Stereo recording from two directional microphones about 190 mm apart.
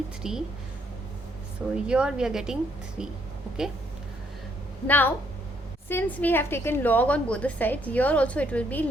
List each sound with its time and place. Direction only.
0.2 s a woman's voice: 5° right (ahead or behind)
1.7 s a woman's voice: 5° right (ahead or behind)
4.9 s a woman's voice: 10° left (ahead or behind)